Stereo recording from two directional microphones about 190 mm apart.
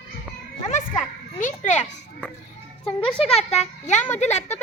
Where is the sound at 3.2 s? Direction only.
30° left (ahead or behind).